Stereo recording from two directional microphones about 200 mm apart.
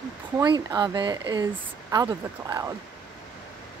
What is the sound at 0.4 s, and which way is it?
Speech, 20° right (ahead or behind).